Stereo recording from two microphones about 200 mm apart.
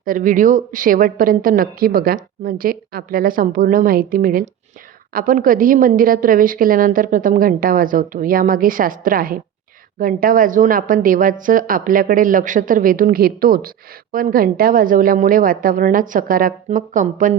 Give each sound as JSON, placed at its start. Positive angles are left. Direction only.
{"t": 0.0, "sound": "a woman's voice", "side_deg": -45}